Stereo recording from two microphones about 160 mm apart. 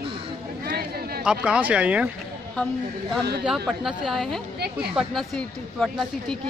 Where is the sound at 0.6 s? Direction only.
75° right (ahead or behind).